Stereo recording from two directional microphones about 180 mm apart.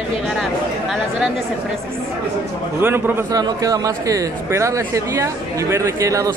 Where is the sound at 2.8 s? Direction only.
10° right (ahead or behind).